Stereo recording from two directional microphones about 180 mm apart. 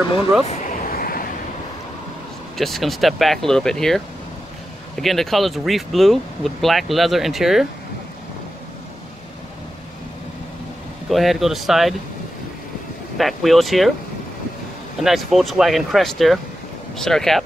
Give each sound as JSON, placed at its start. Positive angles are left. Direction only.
{"t": 0.5, "sound": "vehicle", "side_deg": 50}
{"t": 2.5, "sound": "speech", "side_deg": 0}
{"t": 11.1, "sound": "speech", "side_deg": 0}
{"t": 13.2, "sound": "speech", "side_deg": 0}
{"t": 15.0, "sound": "speech", "side_deg": 0}